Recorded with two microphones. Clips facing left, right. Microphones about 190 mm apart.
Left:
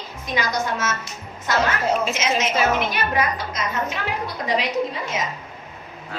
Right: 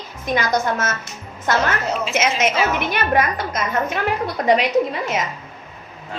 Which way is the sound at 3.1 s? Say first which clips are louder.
Right 4 dB; 55° right (ahead or behind).